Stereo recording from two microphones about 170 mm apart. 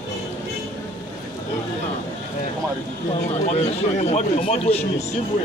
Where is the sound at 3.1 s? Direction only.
40° left (ahead or behind).